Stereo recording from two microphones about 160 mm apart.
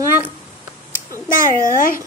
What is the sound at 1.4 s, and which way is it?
Speech, 60° left (ahead or behind).